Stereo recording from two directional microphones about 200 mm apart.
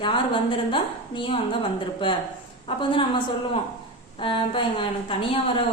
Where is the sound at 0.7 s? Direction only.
25° left (ahead or behind).